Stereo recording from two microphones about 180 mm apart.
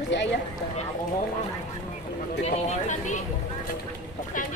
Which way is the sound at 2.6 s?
40° left (ahead or behind).